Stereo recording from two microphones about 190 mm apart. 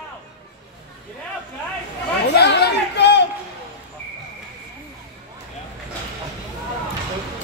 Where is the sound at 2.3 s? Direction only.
60° left (ahead or behind).